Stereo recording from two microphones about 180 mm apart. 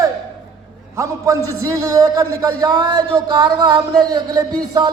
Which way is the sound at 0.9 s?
15° right (ahead or behind).